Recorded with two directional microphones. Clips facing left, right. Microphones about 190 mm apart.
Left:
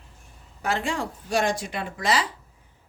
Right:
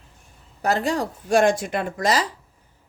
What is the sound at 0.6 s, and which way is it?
A woman's voice, 40° right (ahead or behind).